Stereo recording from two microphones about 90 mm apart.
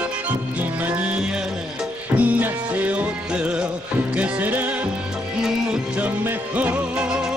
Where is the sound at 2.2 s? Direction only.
20° right (ahead or behind).